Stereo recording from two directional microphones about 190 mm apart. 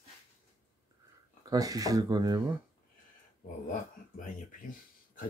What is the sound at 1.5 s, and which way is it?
Speech, 20° right (ahead or behind).